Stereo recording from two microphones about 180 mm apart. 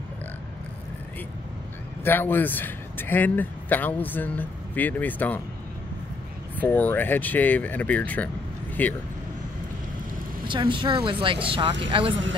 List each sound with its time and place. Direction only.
2.0 s speech: 10° left (ahead or behind)
6.5 s speech: 10° left (ahead or behind)
10.4 s speech: 25° right (ahead or behind)